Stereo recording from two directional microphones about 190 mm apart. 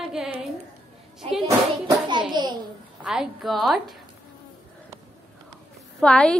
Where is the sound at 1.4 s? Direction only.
25° right (ahead or behind).